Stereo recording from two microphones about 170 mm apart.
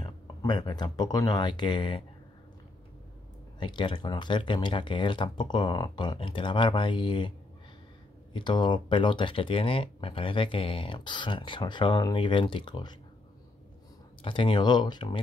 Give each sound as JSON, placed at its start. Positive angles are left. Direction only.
{"t": 0.0, "sound": "speech", "side_deg": 25}
{"t": 3.5, "sound": "speech", "side_deg": 30}
{"t": 14.2, "sound": "speech", "side_deg": 30}